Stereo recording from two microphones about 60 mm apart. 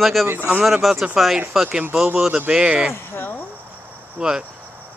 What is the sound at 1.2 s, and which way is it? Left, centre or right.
Speech, centre.